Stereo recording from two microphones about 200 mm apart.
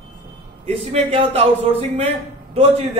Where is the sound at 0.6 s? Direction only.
30° right (ahead or behind).